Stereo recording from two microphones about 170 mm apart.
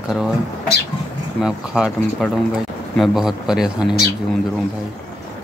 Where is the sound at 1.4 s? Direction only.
Centre (ahead or behind).